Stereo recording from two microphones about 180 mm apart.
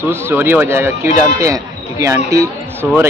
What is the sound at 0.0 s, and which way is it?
Speech, 10° right (ahead or behind).